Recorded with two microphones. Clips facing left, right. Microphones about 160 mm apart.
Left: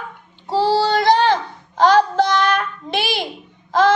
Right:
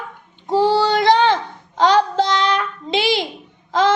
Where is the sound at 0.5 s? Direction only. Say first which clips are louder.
Right 1 dB; 15° right (ahead or behind).